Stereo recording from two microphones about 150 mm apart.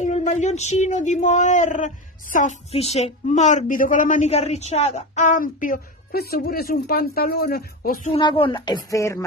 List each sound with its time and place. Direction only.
0.0 s a woman's voice: 50° left (ahead or behind)
2.7 s a woman's voice: 45° left (ahead or behind); by 8.1 s 70° left (ahead or behind)
8.1 s a woman's voice: 35° left (ahead or behind)